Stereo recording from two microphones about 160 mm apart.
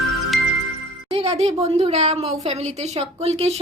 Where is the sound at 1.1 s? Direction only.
40° right (ahead or behind).